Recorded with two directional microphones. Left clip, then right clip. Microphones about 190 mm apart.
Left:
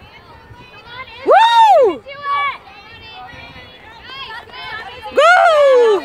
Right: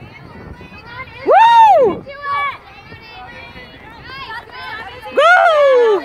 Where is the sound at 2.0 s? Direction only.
40° right (ahead or behind).